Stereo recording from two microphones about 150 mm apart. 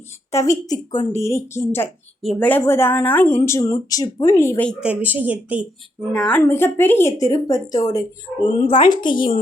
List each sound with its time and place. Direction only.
0.3 s a woman's voice: 20° left (ahead or behind)
4.8 s speech: 10° right (ahead or behind)
6.1 s a woman's voice: 10° left (ahead or behind); by 8.4 s 25° left (ahead or behind)
8.6 s a woman's voice: 35° left (ahead or behind)